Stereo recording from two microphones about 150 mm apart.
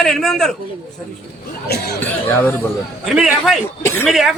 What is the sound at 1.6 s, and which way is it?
Speech, 90° left.